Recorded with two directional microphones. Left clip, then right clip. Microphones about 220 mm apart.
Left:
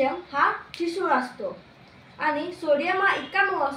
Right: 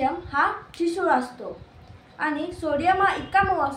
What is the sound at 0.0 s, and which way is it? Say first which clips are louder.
Speech: even; 20° right (ahead or behind).